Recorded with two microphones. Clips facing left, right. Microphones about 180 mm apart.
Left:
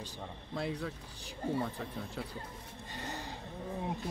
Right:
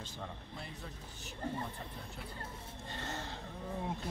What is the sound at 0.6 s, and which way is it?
Speech, 80° left.